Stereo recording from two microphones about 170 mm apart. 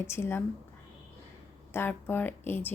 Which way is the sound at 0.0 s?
15° left (ahead or behind).